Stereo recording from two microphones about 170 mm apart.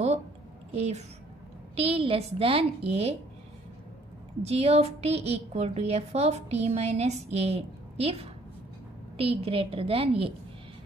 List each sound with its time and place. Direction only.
0.7 s a woman's voice: 40° right (ahead or behind)
4.4 s a woman's voice: 40° right (ahead or behind)